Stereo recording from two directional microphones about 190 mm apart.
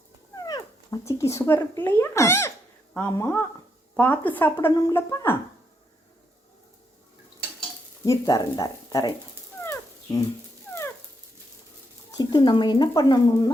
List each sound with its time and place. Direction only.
0.3 s speech: 20° left (ahead or behind)
8.0 s speech: 20° left (ahead or behind)
9.6 s a sound: 15° left (ahead or behind)
12.1 s speech: 25° left (ahead or behind)